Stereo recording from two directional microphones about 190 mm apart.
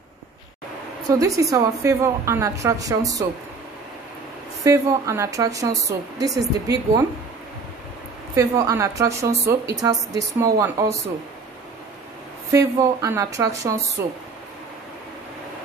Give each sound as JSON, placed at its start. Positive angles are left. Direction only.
{"t": 1.1, "sound": "a woman's voice", "side_deg": -15}
{"t": 4.6, "sound": "a woman's voice", "side_deg": -15}
{"t": 8.4, "sound": "a woman's voice", "side_deg": -15}
{"t": 12.4, "sound": "a woman's voice", "side_deg": -15}